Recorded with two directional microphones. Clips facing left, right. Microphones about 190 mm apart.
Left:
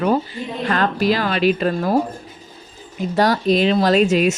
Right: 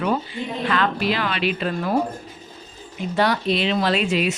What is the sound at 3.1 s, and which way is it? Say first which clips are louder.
Speech: left 4 dB; 40° left (ahead or behind).